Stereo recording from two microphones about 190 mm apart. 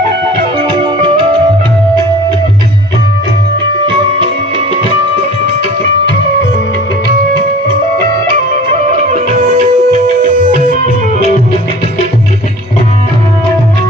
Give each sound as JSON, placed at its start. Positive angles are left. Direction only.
{"t": 0.7, "sound": "music", "side_deg": -25}
{"t": 8.9, "sound": "music", "side_deg": -40}